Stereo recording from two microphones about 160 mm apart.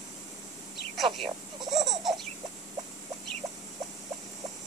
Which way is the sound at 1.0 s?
30° right (ahead or behind).